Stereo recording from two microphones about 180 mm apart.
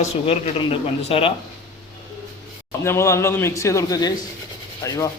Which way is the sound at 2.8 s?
15° left (ahead or behind).